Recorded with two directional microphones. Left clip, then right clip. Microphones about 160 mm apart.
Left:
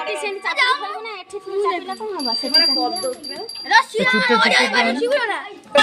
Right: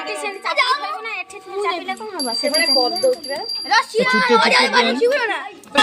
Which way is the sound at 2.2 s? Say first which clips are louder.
Left 1 dB; 15° right (ahead or behind).